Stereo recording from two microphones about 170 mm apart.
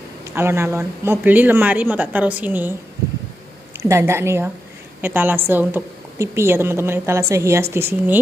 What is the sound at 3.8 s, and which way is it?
A woman's voice, 15° right (ahead or behind).